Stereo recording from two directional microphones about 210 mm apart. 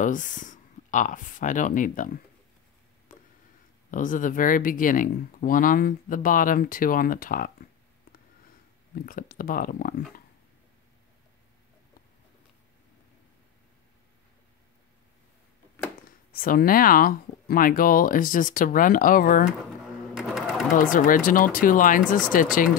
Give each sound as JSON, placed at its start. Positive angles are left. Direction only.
{"t": 0.0, "sound": "speech", "side_deg": 40}
{"t": 3.1, "sound": "a sound", "side_deg": 40}
{"t": 3.9, "sound": "speech", "side_deg": 40}
{"t": 9.0, "sound": "speech", "side_deg": 40}
{"t": 16.3, "sound": "speech", "side_deg": 45}
{"t": 20.2, "sound": "sewing machine", "side_deg": 0}
{"t": 20.7, "sound": "speech", "side_deg": 40}